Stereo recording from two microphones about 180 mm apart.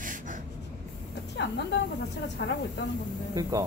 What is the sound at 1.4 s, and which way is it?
Speech, 75° left (ahead or behind).